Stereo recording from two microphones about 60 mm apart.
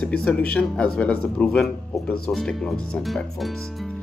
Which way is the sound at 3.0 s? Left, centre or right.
Centre.